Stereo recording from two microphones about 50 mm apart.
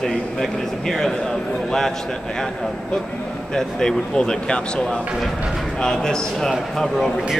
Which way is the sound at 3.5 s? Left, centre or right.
Centre.